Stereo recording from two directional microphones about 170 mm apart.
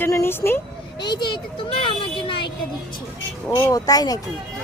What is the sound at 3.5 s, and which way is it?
Speech, 20° left (ahead or behind).